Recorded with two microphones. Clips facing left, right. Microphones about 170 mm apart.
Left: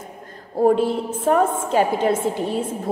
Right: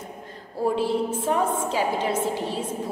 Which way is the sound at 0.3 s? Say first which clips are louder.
Left 8 dB; 50° left (ahead or behind).